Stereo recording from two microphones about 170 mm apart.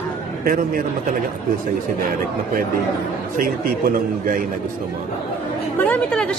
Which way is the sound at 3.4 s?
60° right (ahead or behind).